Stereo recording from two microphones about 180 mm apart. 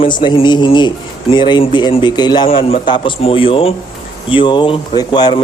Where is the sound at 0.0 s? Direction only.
25° left (ahead or behind).